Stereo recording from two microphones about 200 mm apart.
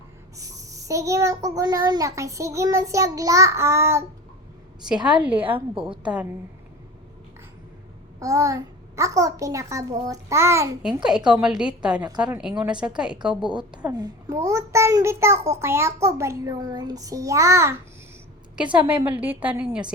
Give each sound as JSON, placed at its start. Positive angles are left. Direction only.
{"t": 0.3, "sound": "a child's voice", "side_deg": -15}
{"t": 5.0, "sound": "a child's voice", "side_deg": -5}
{"t": 5.5, "sound": "a woman's voice", "side_deg": -25}
{"t": 8.2, "sound": "a child's voice", "side_deg": -15}
{"t": 13.9, "sound": "a child's voice", "side_deg": -20}